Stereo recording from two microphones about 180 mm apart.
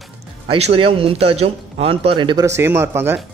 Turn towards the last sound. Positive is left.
turn(degrees=-15)  # may be behind; listen again after turning